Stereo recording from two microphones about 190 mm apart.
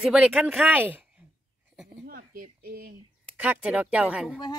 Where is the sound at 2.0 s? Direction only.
50° right (ahead or behind).